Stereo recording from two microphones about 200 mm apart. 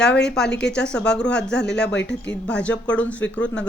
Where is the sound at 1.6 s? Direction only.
60° left (ahead or behind).